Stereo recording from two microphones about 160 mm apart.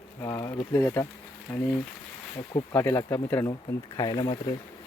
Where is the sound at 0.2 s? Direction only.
20° left (ahead or behind).